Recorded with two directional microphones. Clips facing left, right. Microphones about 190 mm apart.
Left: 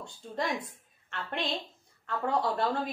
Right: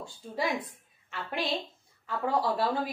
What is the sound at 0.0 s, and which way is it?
A woman's voice, centre (ahead or behind).